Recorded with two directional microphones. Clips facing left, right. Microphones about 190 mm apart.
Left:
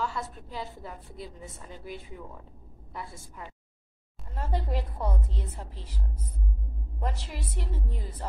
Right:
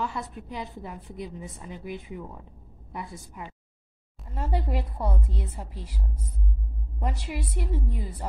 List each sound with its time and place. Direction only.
0.0 s a woman's voice: 20° right (ahead or behind)
7.0 s a woman's voice: 10° right (ahead or behind)